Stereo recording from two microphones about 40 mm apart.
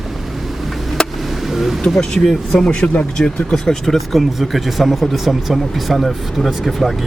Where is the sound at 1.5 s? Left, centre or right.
Centre.